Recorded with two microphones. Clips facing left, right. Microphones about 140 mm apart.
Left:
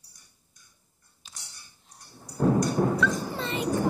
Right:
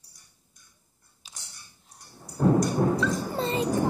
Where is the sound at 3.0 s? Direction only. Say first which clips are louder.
Right 1 dB; 35° right (ahead or behind).